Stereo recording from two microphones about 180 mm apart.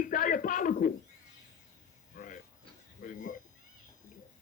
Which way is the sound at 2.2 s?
50° left (ahead or behind).